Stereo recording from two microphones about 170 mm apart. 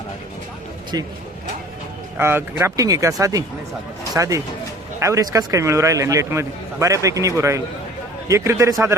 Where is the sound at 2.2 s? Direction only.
15° right (ahead or behind).